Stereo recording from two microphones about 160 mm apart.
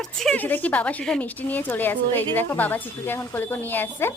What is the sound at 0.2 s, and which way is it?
A woman's voice, 5° left (ahead or behind).